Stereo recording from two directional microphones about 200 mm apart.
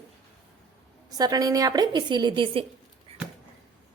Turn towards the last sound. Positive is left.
turn(degrees=-30)  # may be behind; listen again after turning